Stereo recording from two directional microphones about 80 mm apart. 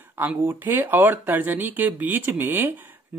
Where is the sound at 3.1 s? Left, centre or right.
Right.